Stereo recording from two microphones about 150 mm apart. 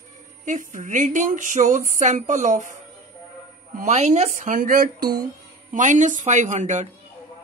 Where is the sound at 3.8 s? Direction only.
50° right (ahead or behind); by 5.2 s 75° right (ahead or behind).